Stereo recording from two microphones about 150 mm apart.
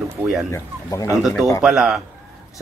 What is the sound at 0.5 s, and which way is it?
Speech, 20° left (ahead or behind).